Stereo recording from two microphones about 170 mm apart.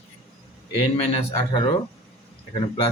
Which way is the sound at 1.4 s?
30° left (ahead or behind).